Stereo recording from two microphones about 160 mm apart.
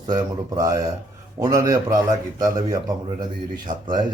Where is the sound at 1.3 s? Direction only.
20° right (ahead or behind).